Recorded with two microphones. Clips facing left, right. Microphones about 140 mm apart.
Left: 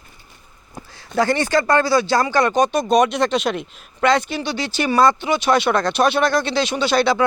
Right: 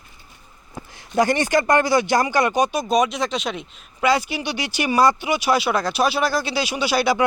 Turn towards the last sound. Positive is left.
turn(degrees=-10)  # may be behind; listen again after turning